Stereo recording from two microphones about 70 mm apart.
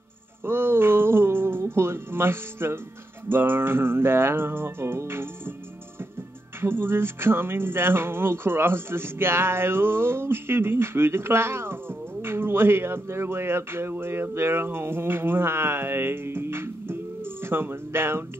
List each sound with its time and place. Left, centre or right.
0.5 s music: right
3.3 s speech: right
6.6 s speech: right